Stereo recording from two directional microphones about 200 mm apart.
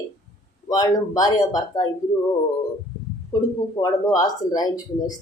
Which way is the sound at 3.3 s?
20° left (ahead or behind).